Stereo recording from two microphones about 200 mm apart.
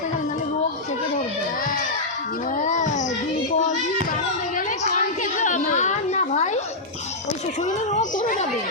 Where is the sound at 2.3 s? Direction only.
40° left (ahead or behind).